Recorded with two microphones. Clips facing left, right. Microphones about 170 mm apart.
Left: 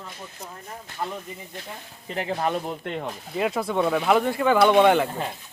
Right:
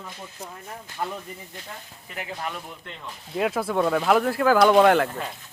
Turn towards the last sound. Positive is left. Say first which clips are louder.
# right 1 dB
turn(degrees=0)  # may be behind; listen again after turning